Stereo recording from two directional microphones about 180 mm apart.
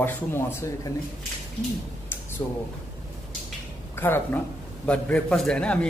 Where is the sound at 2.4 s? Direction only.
20° left (ahead or behind).